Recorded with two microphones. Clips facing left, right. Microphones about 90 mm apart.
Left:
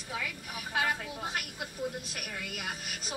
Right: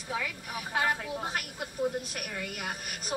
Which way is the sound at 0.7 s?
40° right (ahead or behind).